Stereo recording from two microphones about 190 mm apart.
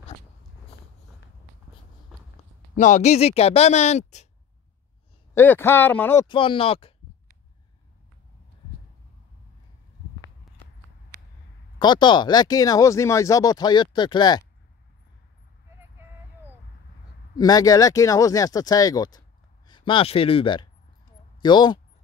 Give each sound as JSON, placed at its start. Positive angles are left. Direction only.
{"t": 2.1, "sound": "a sound", "side_deg": -5}
{"t": 2.7, "sound": "speech", "side_deg": 40}
{"t": 5.3, "sound": "speech", "side_deg": 10}
{"t": 6.2, "sound": "speech", "side_deg": 25}
{"t": 11.8, "sound": "speech", "side_deg": 25}
{"t": 17.4, "sound": "speech", "side_deg": 20}